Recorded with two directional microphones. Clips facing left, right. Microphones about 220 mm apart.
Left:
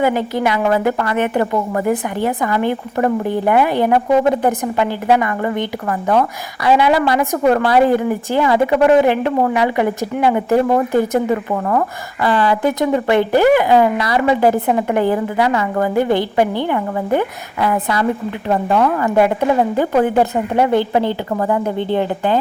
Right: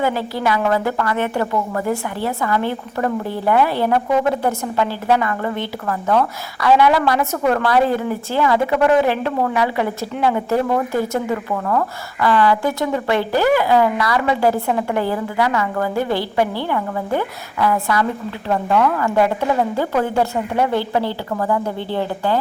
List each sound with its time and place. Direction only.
0.0 s a woman's voice: 20° left (ahead or behind)